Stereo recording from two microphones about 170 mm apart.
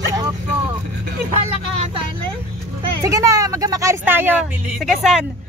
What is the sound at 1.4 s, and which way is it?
Speech, 35° right (ahead or behind).